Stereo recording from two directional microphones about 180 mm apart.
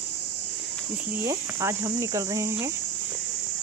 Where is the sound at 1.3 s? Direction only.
15° right (ahead or behind).